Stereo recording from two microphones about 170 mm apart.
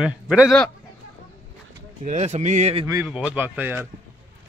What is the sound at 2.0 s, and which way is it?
Speech, 45° right (ahead or behind).